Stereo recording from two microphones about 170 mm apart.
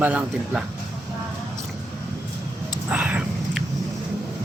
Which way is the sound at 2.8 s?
10° right (ahead or behind).